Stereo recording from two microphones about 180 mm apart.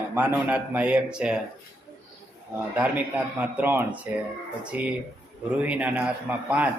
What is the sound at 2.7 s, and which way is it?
A man's voice, 10° right (ahead or behind).